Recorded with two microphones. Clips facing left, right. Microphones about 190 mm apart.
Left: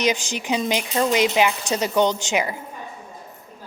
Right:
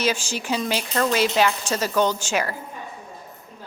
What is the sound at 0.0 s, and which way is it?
A woman's voice, 15° left (ahead or behind).